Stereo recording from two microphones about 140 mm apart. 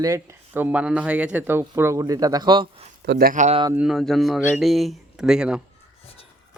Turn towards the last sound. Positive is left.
turn(degrees=-5)  # may be behind; listen again after turning